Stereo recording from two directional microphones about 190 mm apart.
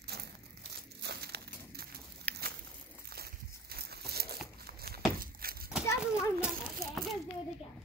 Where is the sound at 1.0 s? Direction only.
60° right (ahead or behind).